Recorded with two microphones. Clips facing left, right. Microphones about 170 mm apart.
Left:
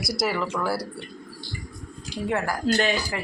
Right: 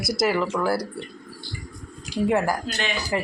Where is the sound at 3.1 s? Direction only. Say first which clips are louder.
Right 6 dB; 30° right (ahead or behind).